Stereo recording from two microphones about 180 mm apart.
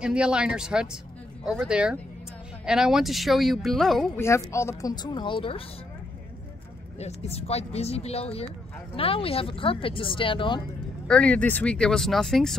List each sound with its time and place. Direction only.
0.0 s speech: 5° right (ahead or behind)
4.2 s speech: 15° left (ahead or behind)
7.0 s speech: 35° left (ahead or behind)
11.1 s speech: 5° left (ahead or behind)